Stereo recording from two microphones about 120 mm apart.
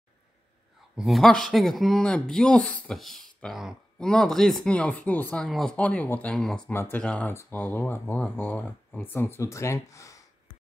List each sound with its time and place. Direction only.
0.9 s speech: centre (ahead or behind)
6.7 s speech: 20° left (ahead or behind)
7.0 s speech: 10° left (ahead or behind); by 10.2 s 25° left (ahead or behind)